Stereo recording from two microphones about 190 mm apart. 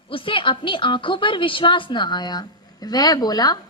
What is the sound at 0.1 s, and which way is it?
Speech, 25° left (ahead or behind).